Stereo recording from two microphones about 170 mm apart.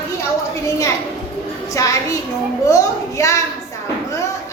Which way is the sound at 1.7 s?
20° left (ahead or behind).